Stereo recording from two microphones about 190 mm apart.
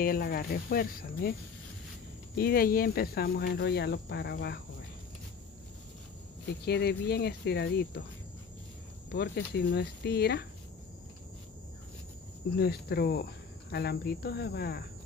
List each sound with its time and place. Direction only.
0.0 s speech: 50° left (ahead or behind)
2.3 s speech: 50° left (ahead or behind)
6.6 s speech: 60° left (ahead or behind)
9.1 s speech: 60° left (ahead or behind)
12.5 s speech: 55° left (ahead or behind)